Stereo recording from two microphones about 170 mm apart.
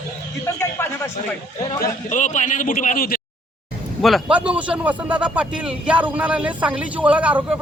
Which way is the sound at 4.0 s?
Centre (ahead or behind).